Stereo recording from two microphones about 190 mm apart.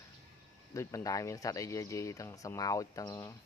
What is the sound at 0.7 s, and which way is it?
Speech, 15° left (ahead or behind).